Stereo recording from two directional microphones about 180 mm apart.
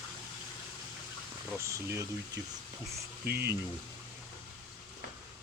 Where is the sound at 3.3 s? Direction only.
65° right (ahead or behind).